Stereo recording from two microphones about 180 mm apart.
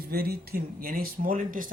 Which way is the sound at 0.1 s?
60° right (ahead or behind).